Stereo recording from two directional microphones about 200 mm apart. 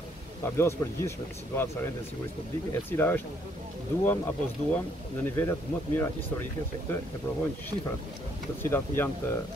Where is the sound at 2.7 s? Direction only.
10° left (ahead or behind).